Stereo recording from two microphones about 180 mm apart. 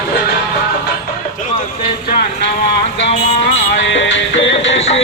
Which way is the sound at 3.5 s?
90° left.